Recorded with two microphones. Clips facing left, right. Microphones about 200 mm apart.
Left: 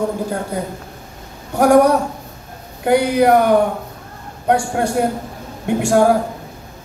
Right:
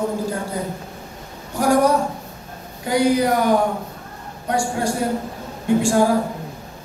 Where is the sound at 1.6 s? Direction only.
65° left (ahead or behind).